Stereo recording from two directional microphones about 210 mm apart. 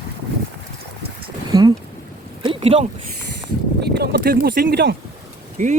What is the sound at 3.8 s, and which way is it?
Speech, 50° right (ahead or behind).